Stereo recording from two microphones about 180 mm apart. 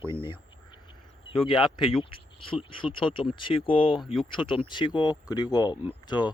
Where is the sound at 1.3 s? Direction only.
30° left (ahead or behind).